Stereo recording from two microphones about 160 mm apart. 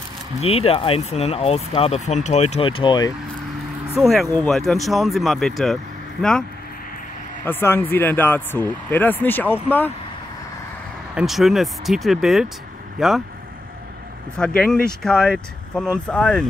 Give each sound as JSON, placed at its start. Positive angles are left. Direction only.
{"t": 0.4, "sound": "speech", "side_deg": 40}
{"t": 4.0, "sound": "speech", "side_deg": 0}
{"t": 7.4, "sound": "speech", "side_deg": 15}
{"t": 11.1, "sound": "speech", "side_deg": 0}
{"t": 14.4, "sound": "speech", "side_deg": 5}